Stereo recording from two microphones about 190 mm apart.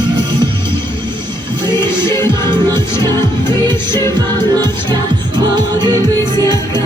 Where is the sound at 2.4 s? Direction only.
25° right (ahead or behind).